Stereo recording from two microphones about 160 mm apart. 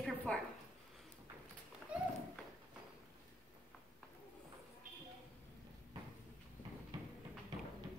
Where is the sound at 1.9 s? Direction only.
5° right (ahead or behind).